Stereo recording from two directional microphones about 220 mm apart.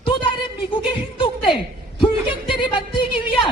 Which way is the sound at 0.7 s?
20° left (ahead or behind).